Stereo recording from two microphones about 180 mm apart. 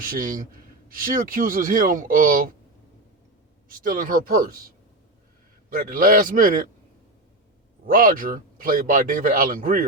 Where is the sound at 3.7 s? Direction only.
50° right (ahead or behind).